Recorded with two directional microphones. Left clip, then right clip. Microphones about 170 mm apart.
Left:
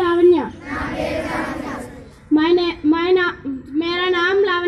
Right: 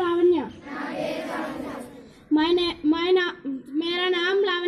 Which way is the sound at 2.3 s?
25° right (ahead or behind).